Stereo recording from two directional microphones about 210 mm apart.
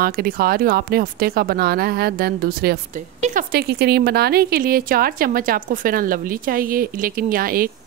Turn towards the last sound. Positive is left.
turn(degrees=-45)  # may be behind; listen again after turning